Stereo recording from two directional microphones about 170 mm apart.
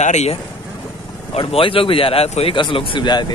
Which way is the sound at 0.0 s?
40° left (ahead or behind).